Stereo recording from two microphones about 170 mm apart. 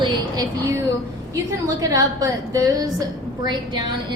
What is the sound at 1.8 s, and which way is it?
A woman's voice, 20° right (ahead or behind).